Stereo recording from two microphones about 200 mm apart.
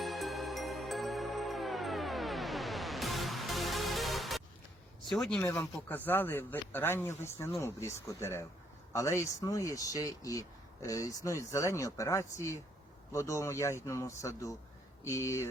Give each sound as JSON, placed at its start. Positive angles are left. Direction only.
{"t": 0.0, "sound": "music", "side_deg": 0}
{"t": 5.1, "sound": "speech", "side_deg": 0}